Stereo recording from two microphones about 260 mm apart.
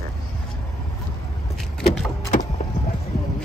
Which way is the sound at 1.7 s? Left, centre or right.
Centre.